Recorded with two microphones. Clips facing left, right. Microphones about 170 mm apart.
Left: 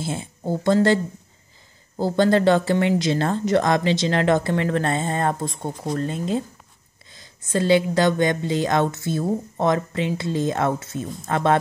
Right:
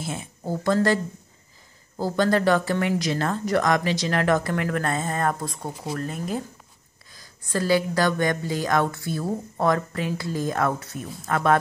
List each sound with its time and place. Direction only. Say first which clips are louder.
0.0 s speech: left 4 dB; 30° left (ahead or behind)